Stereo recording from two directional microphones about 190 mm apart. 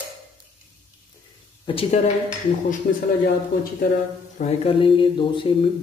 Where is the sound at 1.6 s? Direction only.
30° left (ahead or behind).